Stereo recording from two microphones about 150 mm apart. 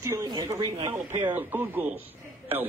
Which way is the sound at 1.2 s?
10° right (ahead or behind).